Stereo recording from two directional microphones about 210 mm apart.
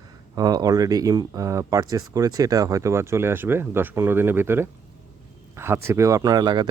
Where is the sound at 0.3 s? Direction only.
20° right (ahead or behind).